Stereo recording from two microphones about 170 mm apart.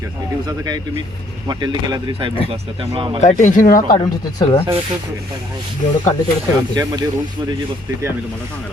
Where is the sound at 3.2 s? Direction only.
45° left (ahead or behind).